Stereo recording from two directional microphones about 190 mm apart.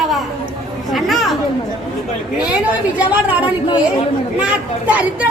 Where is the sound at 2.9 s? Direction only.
10° right (ahead or behind).